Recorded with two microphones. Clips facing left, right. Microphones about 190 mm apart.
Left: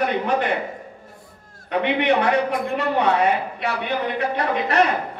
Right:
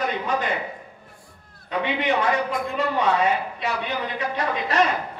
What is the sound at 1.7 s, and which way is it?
A man's voice, 65° left (ahead or behind).